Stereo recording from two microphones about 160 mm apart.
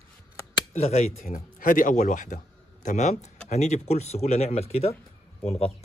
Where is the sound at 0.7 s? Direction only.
45° left (ahead or behind).